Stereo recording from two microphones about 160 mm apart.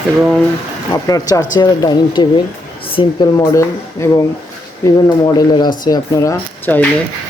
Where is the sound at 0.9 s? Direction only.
25° left (ahead or behind).